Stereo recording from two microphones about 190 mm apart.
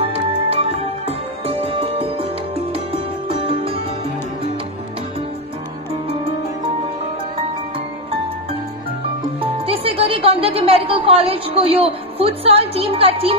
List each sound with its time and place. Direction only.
0.0 s music: 30° right (ahead or behind)
9.4 s speech: 30° right (ahead or behind)